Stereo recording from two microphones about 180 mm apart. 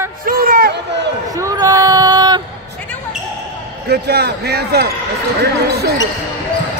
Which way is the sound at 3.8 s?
65° right (ahead or behind).